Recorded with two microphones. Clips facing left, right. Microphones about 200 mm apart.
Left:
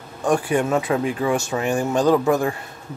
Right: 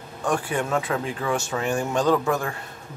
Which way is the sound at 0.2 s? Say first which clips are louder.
Left 5 dB; 15° left (ahead or behind).